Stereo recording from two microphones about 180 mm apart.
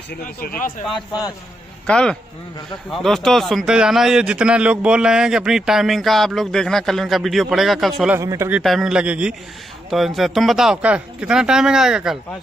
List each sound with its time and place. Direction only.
0.1 s speech: 55° left (ahead or behind)
1.9 s a man's voice: 5° left (ahead or behind)
8.2 s speech: 15° right (ahead or behind)
8.5 s a man's voice: centre (ahead or behind)